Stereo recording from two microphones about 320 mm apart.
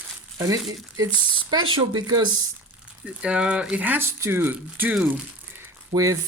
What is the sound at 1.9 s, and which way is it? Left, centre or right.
Speech, centre.